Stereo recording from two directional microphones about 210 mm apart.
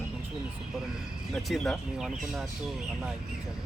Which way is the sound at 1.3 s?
5° left (ahead or behind).